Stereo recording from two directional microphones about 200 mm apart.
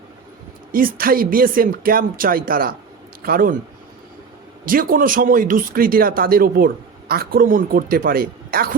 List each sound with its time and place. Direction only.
0.7 s speech: 45° right (ahead or behind)
4.6 s speech: 45° right (ahead or behind)